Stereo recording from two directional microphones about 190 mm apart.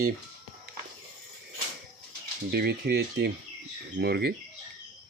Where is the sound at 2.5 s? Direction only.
60° right (ahead or behind).